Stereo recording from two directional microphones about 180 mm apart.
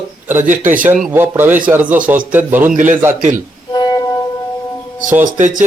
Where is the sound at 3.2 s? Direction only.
45° right (ahead or behind).